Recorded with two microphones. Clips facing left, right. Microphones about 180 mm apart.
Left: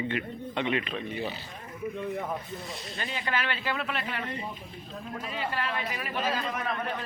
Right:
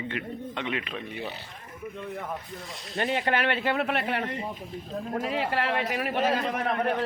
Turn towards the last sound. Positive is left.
turn(degrees=-55)  # may be behind; listen again after turning